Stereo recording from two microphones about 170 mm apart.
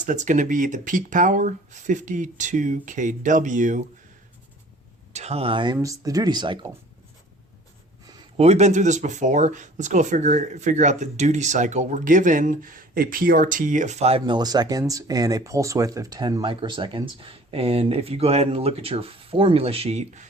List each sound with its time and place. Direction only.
0.0 s speech: 45° right (ahead or behind)
5.1 s speech: 40° right (ahead or behind)
8.4 s speech: 40° right (ahead or behind)